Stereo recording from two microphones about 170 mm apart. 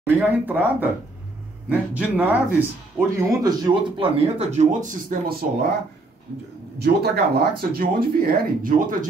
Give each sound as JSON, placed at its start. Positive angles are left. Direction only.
{"t": 0.0, "sound": "speech", "side_deg": -10}
{"t": 6.8, "sound": "speech", "side_deg": -70}